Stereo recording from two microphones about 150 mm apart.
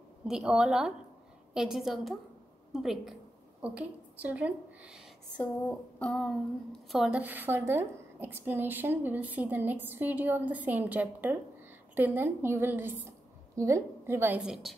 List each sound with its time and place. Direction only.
0.2 s a woman's voice: 5° right (ahead or behind)
5.4 s a sound: 10° left (ahead or behind)
6.9 s a woman's voice: 5° right (ahead or behind)
14.4 s a woman's voice: centre (ahead or behind)